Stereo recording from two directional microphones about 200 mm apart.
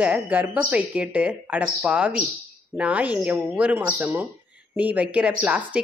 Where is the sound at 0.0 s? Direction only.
10° right (ahead or behind).